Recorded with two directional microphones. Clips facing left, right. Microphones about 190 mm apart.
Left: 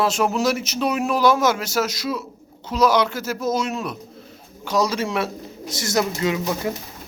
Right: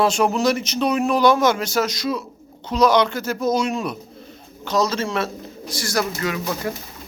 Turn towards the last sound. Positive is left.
turn(degrees=15)  # may be behind; listen again after turning